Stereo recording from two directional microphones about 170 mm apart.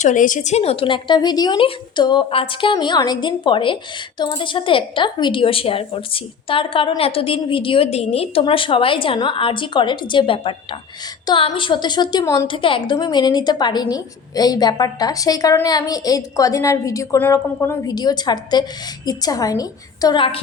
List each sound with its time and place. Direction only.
0.0 s a woman's voice: 50° left (ahead or behind); by 20.4 s 30° left (ahead or behind)